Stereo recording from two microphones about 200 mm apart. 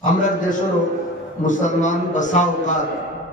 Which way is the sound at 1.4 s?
40° left (ahead or behind).